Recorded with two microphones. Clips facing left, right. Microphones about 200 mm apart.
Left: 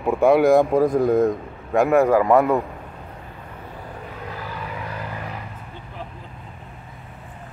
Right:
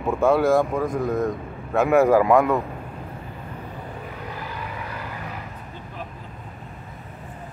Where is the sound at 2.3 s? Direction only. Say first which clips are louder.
Left 1 dB; 5° left (ahead or behind).